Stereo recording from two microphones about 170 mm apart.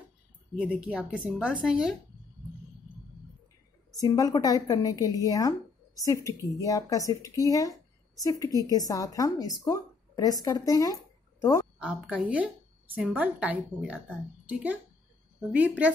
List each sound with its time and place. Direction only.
0.6 s a woman's voice: 5° right (ahead or behind)
3.9 s a woman's voice: 20° left (ahead or behind)
11.8 s a woman's voice: 5° right (ahead or behind)